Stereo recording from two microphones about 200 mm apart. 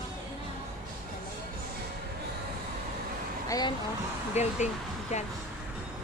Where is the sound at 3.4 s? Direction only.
20° left (ahead or behind).